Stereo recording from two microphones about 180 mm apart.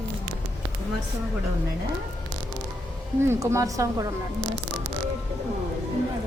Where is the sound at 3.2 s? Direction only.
15° right (ahead or behind).